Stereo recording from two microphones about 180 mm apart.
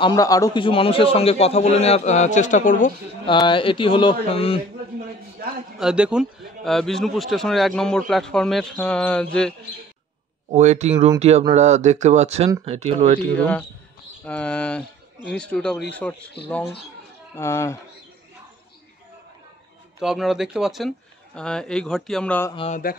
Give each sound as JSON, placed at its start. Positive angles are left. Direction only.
{"t": 0.0, "sound": "a man's voice", "side_deg": 20}
{"t": 3.3, "sound": "speech", "side_deg": 25}
{"t": 5.8, "sound": "a man's voice", "side_deg": -5}
{"t": 10.5, "sound": "speech", "side_deg": -40}
{"t": 13.4, "sound": "a man's voice", "side_deg": 5}
{"t": 17.4, "sound": "speech", "side_deg": 15}
{"t": 20.0, "sound": "a man's voice", "side_deg": 0}